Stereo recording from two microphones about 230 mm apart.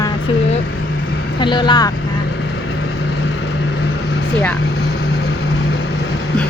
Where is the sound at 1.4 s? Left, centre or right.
Centre.